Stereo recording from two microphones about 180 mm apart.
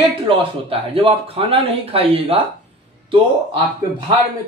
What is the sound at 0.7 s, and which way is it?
A man's voice, 30° right (ahead or behind).